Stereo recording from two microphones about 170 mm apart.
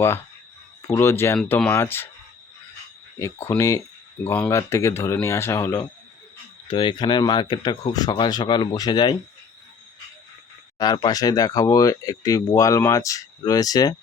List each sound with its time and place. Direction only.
0.8 s speech: 15° left (ahead or behind)
3.2 s speech: 15° left (ahead or behind)
6.7 s speech: 30° left (ahead or behind)
10.8 s speech: 25° left (ahead or behind)